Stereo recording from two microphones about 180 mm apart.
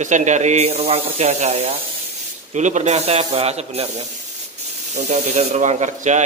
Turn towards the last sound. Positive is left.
turn(degrees=-40)  # may be behind; listen again after turning